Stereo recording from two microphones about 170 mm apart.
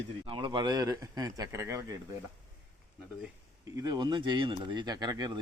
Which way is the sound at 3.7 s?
25° right (ahead or behind).